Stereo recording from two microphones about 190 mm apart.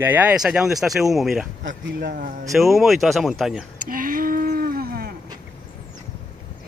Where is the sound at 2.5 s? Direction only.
Centre (ahead or behind).